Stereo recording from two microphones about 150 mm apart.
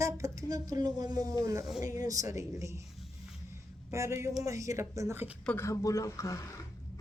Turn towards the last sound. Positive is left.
turn(degrees=20)  # may be behind; listen again after turning